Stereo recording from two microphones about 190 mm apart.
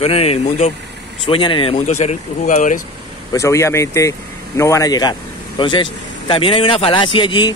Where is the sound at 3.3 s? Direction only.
15° left (ahead or behind).